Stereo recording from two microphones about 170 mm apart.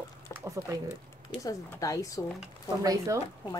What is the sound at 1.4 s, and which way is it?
Speech, 20° left (ahead or behind).